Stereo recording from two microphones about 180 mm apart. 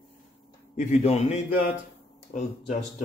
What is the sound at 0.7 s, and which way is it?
Speech, 40° left (ahead or behind).